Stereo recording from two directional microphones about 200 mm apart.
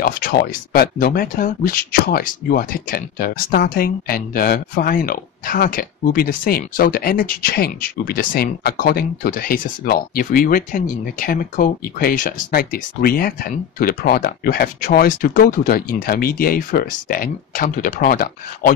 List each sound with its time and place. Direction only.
0.0 s speech: 45° left (ahead or behind)